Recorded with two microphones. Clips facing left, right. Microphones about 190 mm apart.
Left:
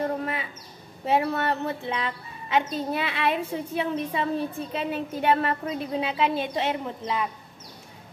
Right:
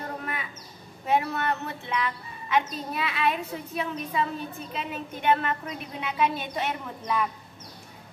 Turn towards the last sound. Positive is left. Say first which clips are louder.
# even
turn(degrees=25)  # may be behind; listen again after turning